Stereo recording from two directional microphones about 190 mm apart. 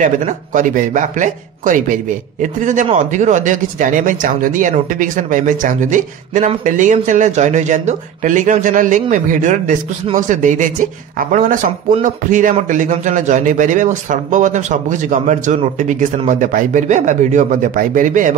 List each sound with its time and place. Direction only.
0.0 s a man's voice: 40° right (ahead or behind)